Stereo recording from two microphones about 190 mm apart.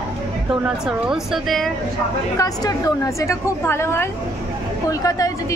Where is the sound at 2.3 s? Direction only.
20° left (ahead or behind).